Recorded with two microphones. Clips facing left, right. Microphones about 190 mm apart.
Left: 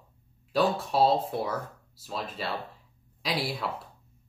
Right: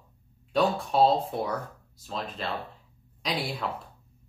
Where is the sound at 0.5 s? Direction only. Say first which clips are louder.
Right 1 dB; centre (ahead or behind).